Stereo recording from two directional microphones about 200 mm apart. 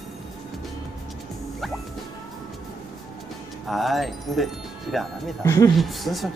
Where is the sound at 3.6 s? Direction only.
Centre (ahead or behind).